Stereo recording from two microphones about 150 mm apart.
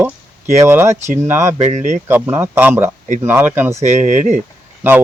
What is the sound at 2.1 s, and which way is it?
Speech, 15° right (ahead or behind).